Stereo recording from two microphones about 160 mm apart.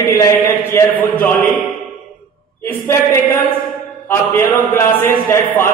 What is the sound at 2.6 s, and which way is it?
Speech, 15° left (ahead or behind).